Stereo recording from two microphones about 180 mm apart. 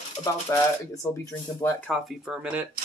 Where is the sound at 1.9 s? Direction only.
Centre (ahead or behind).